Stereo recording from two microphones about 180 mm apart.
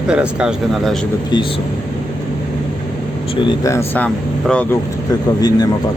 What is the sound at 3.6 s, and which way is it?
Speech, 15° left (ahead or behind).